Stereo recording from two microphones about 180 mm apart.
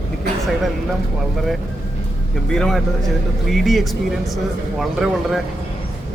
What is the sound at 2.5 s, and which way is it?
Speech, 5° left (ahead or behind).